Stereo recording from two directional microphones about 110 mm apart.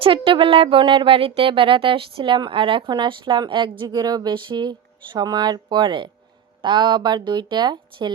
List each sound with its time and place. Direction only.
0.0 s speech: 55° right (ahead or behind)